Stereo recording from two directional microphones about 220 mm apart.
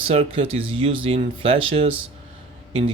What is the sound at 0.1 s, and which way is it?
Speech, 25° right (ahead or behind).